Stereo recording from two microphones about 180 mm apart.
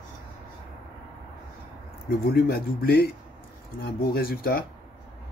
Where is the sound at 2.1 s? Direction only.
60° left (ahead or behind).